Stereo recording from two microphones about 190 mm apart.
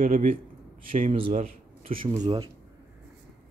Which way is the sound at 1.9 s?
25° right (ahead or behind).